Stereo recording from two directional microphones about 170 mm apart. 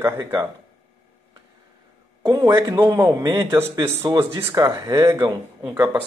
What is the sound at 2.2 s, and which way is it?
Speech, 20° right (ahead or behind).